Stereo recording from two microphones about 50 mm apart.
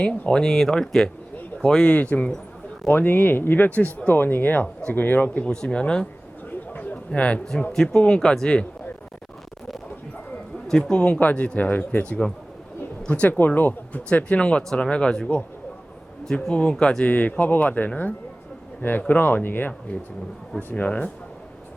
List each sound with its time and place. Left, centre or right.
0.0 s speech: left
0.4 s speech: centre
2.0 s speech: left
2.9 s speech: left
5.5 s speech: centre
6.5 s a sound: left
7.1 s speech: left
10.7 s speech: centre; by 12.0 s left
12.0 s speech: left
14.1 s speech: left
17.0 s speech: left